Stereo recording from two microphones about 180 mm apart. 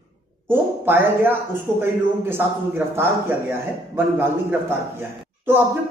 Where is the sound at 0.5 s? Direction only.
10° right (ahead or behind).